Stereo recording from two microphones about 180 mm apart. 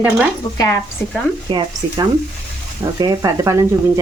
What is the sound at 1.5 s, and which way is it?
Speech, 25° right (ahead or behind).